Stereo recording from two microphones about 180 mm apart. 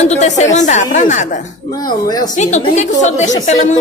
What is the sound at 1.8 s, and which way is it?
Speech, 20° left (ahead or behind).